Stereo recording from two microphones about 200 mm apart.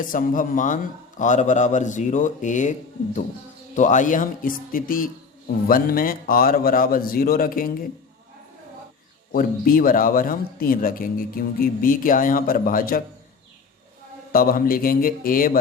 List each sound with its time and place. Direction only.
0.0 s a man's voice: 40° left (ahead or behind)
9.3 s speech: 45° left (ahead or behind)
14.3 s speech: 45° left (ahead or behind)